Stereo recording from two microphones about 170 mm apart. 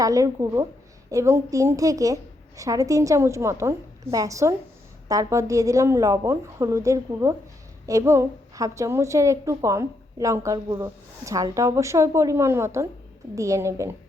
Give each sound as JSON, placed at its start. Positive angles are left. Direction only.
{"t": 0.0, "sound": "a woman's voice", "side_deg": -20}